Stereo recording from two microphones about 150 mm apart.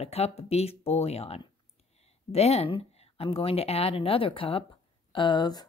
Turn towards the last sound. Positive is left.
turn(degrees=25)  # may be behind; listen again after turning